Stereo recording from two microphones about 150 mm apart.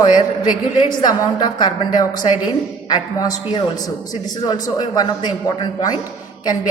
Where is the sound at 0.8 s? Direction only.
30° left (ahead or behind).